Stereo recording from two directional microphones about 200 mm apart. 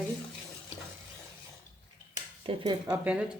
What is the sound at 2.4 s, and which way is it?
Speech, 25° right (ahead or behind).